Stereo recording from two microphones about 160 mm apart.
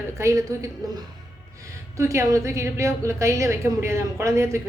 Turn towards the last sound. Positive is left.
turn(degrees=-20)  # may be behind; listen again after turning